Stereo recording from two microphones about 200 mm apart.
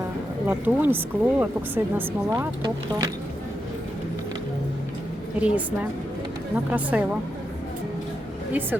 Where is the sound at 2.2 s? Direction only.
15° right (ahead or behind).